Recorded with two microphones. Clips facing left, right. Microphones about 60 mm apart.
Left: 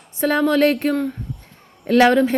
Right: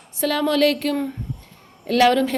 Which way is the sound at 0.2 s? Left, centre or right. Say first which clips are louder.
Left 2 dB; left.